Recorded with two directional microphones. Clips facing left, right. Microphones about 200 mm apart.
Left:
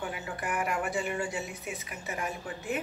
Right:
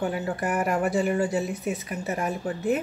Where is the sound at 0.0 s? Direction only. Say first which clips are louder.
Right 9 dB; 40° right (ahead or behind).